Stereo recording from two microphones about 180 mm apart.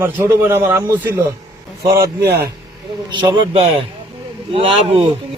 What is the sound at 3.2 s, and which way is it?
A man's voice, 25° right (ahead or behind).